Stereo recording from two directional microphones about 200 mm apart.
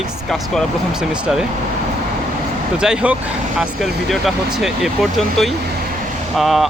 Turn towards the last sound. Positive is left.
turn(degrees=0)  # may be behind; listen again after turning